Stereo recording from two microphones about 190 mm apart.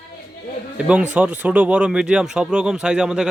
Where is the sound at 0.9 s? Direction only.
5° right (ahead or behind).